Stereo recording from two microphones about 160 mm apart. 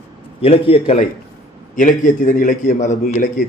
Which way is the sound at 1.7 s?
55° left (ahead or behind).